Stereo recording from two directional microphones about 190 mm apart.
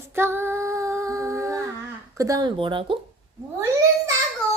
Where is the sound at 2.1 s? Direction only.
15° right (ahead or behind).